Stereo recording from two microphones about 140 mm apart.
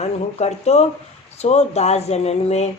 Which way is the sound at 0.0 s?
50° left (ahead or behind).